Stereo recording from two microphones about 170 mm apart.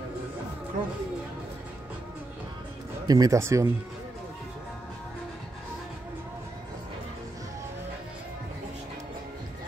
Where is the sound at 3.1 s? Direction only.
20° right (ahead or behind).